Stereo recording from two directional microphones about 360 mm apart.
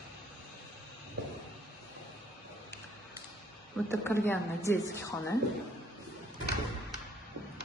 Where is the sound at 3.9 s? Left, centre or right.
Centre.